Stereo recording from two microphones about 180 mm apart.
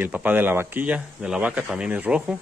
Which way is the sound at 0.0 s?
10° right (ahead or behind).